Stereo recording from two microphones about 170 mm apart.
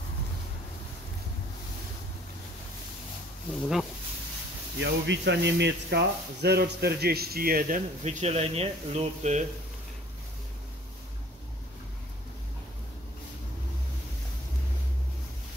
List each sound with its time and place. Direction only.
4.7 s speech: 90° right; by 7.8 s 60° right (ahead or behind)
8.0 s speech: 40° right (ahead or behind)